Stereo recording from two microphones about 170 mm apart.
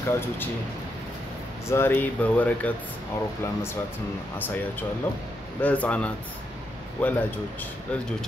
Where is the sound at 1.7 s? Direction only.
15° left (ahead or behind).